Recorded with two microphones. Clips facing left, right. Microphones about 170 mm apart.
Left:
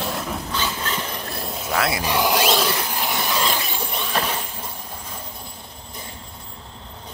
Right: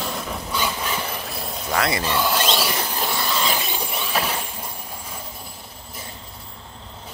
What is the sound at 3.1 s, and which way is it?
Mechanisms, 15° left (ahead or behind).